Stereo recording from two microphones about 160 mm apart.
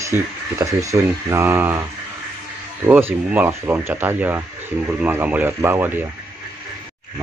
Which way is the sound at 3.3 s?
10° right (ahead or behind).